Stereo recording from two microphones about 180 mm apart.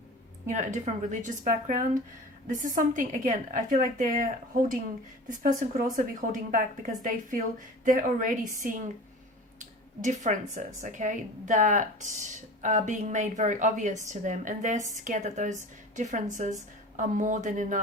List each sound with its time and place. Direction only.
0.4 s speech: 45° right (ahead or behind)